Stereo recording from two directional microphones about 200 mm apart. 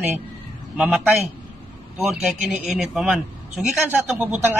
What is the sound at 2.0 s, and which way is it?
A man's voice, centre (ahead or behind).